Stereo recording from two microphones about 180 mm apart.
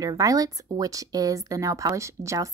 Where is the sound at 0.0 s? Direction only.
20° right (ahead or behind).